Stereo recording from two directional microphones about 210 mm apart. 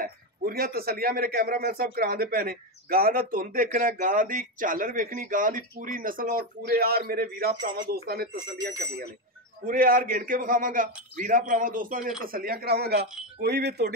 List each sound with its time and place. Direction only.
0.0 s a man's voice: 45° right (ahead or behind)